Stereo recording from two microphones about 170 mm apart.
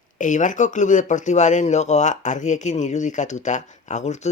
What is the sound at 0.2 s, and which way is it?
Speech, 50° left (ahead or behind).